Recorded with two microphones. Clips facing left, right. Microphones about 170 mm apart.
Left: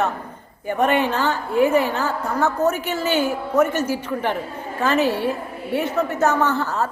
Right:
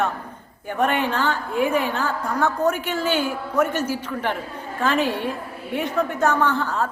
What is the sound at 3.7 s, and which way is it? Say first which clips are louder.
Speech: left 2 dB; 10° right (ahead or behind).